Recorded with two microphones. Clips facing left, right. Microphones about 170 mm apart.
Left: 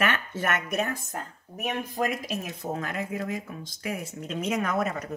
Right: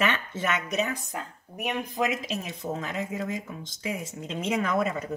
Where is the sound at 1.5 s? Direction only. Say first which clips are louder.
Even; 15° right (ahead or behind).